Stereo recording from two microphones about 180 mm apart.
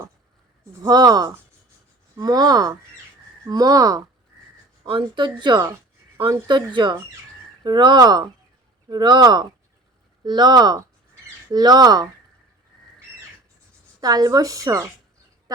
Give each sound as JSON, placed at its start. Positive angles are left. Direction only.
{"t": 0.7, "sound": "speech", "side_deg": -20}
{"t": 14.0, "sound": "speech", "side_deg": -20}